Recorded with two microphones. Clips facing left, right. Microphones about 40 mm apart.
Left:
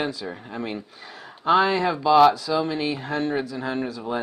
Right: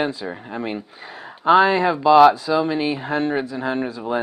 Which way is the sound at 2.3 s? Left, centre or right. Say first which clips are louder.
Right 4 dB; right.